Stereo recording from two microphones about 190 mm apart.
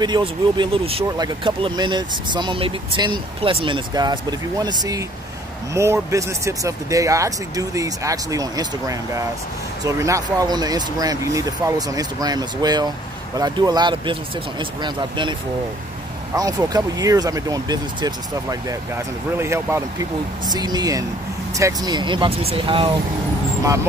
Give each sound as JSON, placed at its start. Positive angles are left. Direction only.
{"t": 0.0, "sound": "speech", "side_deg": -25}
{"t": 16.3, "sound": "speech", "side_deg": -20}